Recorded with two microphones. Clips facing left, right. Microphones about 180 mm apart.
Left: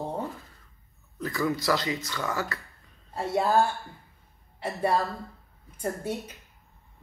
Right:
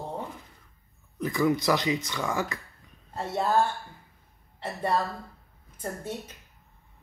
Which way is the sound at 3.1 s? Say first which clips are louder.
Left 2 dB; 10° left (ahead or behind).